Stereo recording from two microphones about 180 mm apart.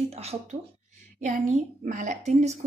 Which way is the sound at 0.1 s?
35° right (ahead or behind).